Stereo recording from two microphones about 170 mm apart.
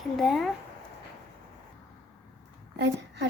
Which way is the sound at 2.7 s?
90° right.